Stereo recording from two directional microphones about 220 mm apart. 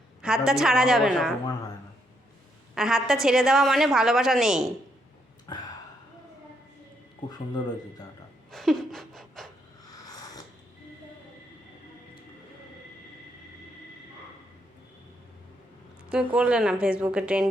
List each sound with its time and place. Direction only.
0.2 s a woman's voice: 5° right (ahead or behind)
2.7 s a woman's voice: centre (ahead or behind)
7.3 s speech: 20° left (ahead or behind)
8.5 s a sound: centre (ahead or behind)
16.0 s a woman's voice: 5° right (ahead or behind)